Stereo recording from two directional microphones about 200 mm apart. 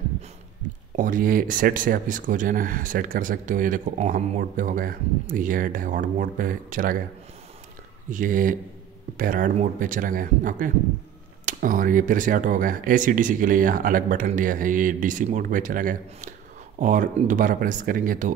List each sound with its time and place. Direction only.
0.9 s speech: 40° right (ahead or behind)
8.1 s speech: 40° right (ahead or behind)